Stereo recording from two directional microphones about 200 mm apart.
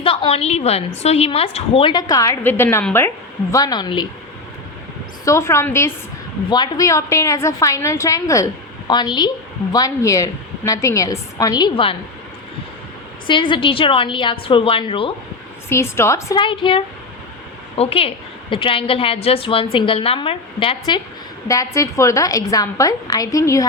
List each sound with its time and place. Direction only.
0.0 s a woman's voice: 25° left (ahead or behind)
5.2 s a woman's voice: 15° left (ahead or behind)
13.2 s a woman's voice: 25° left (ahead or behind)
15.7 s a woman's voice: 15° left (ahead or behind)